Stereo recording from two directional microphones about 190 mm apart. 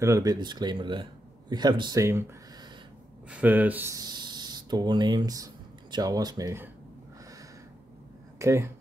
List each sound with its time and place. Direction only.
0.0 s speech: 15° right (ahead or behind)
8.4 s speech: 15° right (ahead or behind)